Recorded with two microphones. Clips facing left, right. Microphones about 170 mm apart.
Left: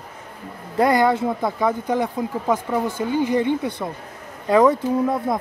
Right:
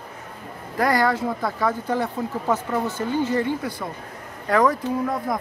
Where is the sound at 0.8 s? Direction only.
20° left (ahead or behind).